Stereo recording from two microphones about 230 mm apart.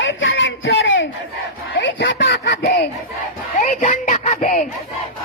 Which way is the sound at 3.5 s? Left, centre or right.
Left.